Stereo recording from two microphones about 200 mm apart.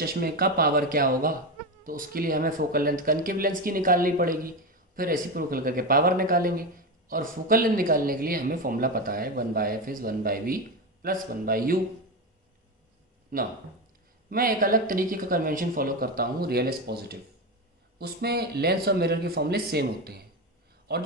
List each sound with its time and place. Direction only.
0.0 s speech: 50° right (ahead or behind)
13.3 s speech: 45° right (ahead or behind)